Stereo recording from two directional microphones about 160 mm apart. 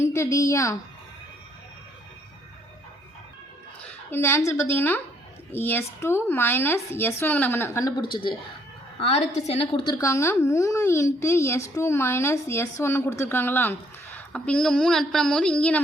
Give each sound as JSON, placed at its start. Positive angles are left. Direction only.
{"t": 0.0, "sound": "a woman's voice", "side_deg": 20}
{"t": 3.8, "sound": "a woman's voice", "side_deg": 15}
{"t": 9.0, "sound": "a woman's voice", "side_deg": 40}